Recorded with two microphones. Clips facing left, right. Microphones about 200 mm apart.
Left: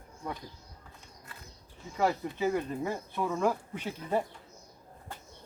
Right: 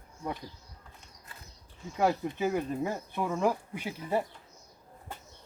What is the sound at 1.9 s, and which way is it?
Speech, 10° right (ahead or behind).